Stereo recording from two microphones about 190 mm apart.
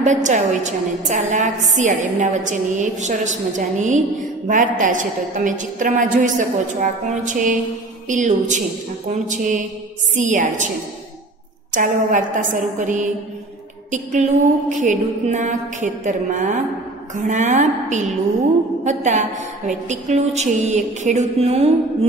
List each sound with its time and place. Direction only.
0.0 s a woman's voice: 40° right (ahead or behind)
11.7 s a woman's voice: 45° right (ahead or behind)